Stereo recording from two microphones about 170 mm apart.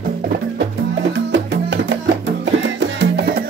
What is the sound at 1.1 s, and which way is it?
Music, 90° right.